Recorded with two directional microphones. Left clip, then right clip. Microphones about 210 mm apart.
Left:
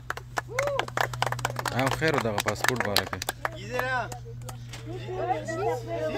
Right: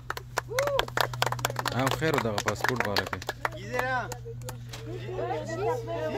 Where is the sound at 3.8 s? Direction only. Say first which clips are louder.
Left 1 dB; 15° left (ahead or behind).